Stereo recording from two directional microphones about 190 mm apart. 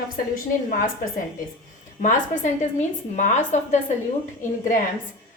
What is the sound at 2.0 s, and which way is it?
A woman's voice, 40° left (ahead or behind).